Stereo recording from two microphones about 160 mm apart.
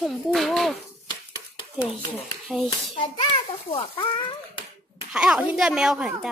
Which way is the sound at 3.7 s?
30° left (ahead or behind).